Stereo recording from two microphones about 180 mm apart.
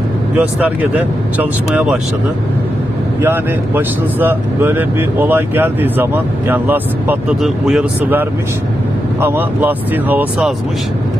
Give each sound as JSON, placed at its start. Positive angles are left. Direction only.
{"t": 0.4, "sound": "speech", "side_deg": -10}
{"t": 3.2, "sound": "speech", "side_deg": -10}